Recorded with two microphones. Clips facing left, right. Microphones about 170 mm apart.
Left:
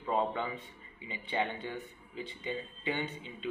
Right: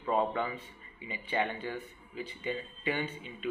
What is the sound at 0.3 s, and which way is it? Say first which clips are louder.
A man's voice: right 2 dB; 20° left (ahead or behind).